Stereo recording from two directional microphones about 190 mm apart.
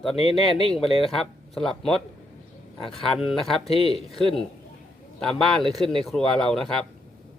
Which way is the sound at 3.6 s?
30° left (ahead or behind).